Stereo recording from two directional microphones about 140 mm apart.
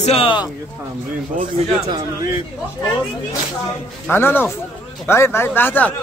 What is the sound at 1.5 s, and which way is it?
Speech, 35° right (ahead or behind).